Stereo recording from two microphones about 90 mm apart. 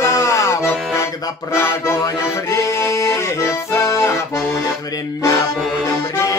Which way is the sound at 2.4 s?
35° left (ahead or behind).